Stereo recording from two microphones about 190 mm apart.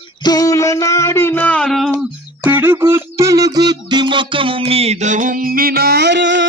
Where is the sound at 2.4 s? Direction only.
10° right (ahead or behind); by 6.4 s 65° right (ahead or behind).